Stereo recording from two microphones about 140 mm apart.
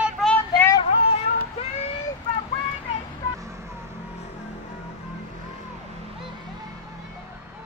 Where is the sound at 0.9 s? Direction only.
40° left (ahead or behind).